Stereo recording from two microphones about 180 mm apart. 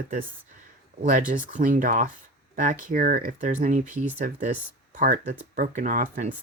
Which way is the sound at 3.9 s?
10° right (ahead or behind).